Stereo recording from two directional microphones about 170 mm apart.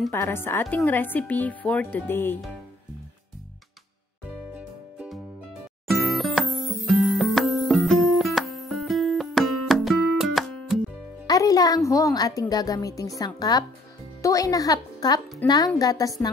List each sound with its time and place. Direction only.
0.1 s speech: 15° left (ahead or behind)
4.6 s music: 5° right (ahead or behind)
11.2 s a sound: 20° left (ahead or behind)
13.2 s speech: 25° left (ahead or behind)